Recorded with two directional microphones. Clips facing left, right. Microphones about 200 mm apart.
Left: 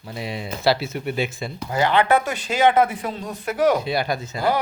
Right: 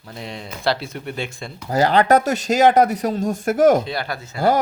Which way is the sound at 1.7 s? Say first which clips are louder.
Right 3 dB; 40° right (ahead or behind).